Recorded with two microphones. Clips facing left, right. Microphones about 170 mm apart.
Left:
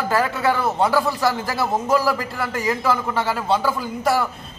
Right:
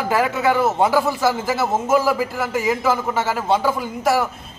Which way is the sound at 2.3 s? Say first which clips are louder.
Right 3 dB; 5° right (ahead or behind).